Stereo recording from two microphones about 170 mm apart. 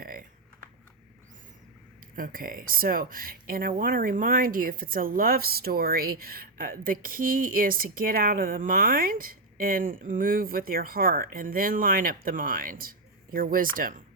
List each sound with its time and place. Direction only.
0.0 s typing: 55° right (ahead or behind)
2.1 s speech: 55° right (ahead or behind)